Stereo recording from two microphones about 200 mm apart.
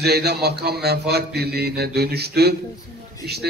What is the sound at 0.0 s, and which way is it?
A man's voice, 55° right (ahead or behind).